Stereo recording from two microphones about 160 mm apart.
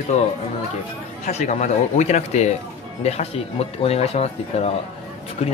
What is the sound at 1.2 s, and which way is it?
Speech, 45° left (ahead or behind).